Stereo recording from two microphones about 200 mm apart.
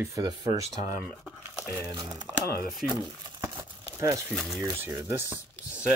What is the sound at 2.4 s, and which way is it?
Speech, 50° left (ahead or behind).